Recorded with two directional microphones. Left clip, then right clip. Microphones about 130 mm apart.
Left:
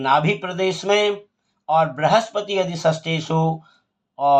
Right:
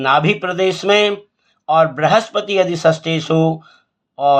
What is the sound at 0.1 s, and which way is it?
Speech, 55° right (ahead or behind).